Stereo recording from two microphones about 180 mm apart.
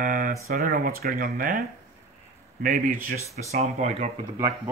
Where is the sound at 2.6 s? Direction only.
50° right (ahead or behind).